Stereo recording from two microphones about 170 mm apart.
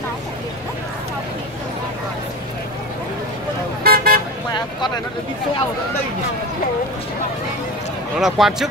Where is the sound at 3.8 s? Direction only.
60° right (ahead or behind).